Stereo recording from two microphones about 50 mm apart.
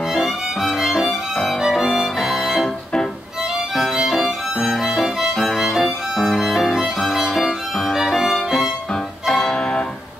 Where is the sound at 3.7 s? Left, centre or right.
Centre.